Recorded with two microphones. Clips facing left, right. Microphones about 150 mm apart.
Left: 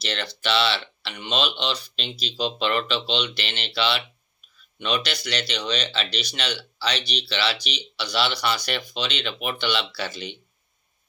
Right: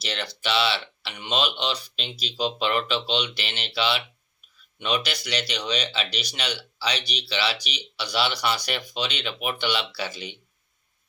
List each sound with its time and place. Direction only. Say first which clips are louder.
0.0 s speech: left 2 dB; 10° right (ahead or behind)